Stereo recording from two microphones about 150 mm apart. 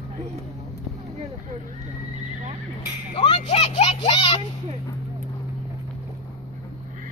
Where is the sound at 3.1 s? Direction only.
40° left (ahead or behind).